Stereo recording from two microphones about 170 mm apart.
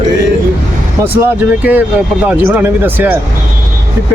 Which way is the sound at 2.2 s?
10° right (ahead or behind).